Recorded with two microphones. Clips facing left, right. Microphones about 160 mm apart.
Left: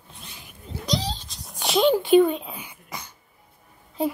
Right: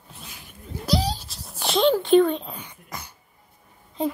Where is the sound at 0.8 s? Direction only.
10° right (ahead or behind).